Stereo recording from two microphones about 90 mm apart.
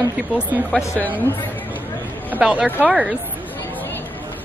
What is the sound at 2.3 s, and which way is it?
Speech, 10° right (ahead or behind).